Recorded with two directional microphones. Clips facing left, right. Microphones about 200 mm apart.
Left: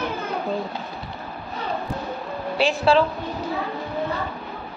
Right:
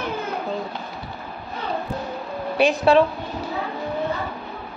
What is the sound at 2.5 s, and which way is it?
Speech, 20° right (ahead or behind).